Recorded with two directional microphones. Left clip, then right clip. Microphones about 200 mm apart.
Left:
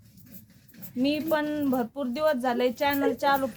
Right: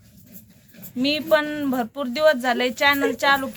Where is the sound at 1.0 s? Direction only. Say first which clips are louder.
Right 6 dB; 5° left (ahead or behind).